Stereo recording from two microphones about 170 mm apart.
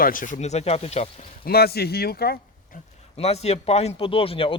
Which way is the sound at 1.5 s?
65° left (ahead or behind).